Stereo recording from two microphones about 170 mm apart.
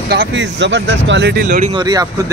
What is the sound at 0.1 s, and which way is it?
Speech, 80° right.